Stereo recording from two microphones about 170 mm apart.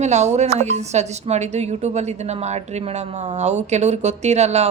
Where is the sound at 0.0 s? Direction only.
40° right (ahead or behind).